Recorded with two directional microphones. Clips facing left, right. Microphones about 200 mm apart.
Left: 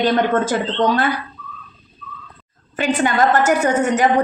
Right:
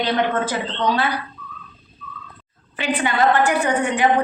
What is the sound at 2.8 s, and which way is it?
A woman's voice, 45° left (ahead or behind).